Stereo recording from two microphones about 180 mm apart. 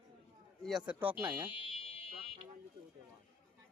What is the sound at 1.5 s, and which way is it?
Fire alarm, 30° left (ahead or behind).